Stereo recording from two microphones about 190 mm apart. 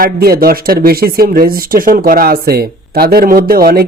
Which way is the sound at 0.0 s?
50° right (ahead or behind).